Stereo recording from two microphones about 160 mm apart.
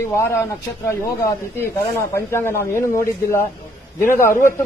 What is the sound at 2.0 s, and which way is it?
A man's voice, 15° left (ahead or behind).